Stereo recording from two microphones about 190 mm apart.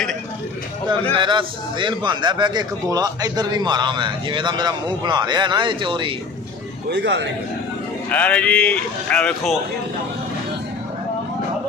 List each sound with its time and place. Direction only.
1.1 s a man's voice: 25° right (ahead or behind)
6.9 s a man's voice: 65° right (ahead or behind)
8.1 s speech: 5° left (ahead or behind)